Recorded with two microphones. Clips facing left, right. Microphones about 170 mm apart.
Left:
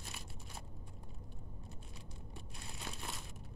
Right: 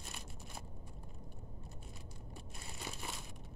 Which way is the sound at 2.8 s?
Centre (ahead or behind).